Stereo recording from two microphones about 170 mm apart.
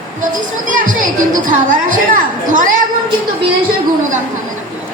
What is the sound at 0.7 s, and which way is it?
Music, 50° right (ahead or behind).